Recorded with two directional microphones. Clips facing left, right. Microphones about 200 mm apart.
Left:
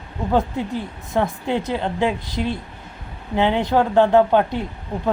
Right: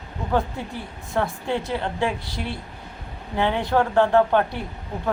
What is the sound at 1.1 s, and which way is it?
A woman's voice, 20° left (ahead or behind).